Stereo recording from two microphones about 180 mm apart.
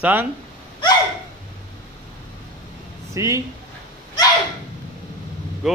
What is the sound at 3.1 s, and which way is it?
Speech, 15° right (ahead or behind).